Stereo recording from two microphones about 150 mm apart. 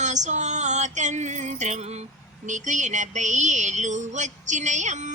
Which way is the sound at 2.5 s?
55° right (ahead or behind).